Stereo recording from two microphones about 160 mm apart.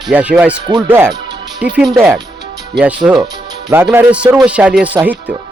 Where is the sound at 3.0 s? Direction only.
10° right (ahead or behind).